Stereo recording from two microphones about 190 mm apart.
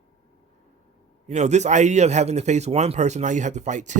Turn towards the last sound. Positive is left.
turn(degrees=-40)  # may be behind; listen again after turning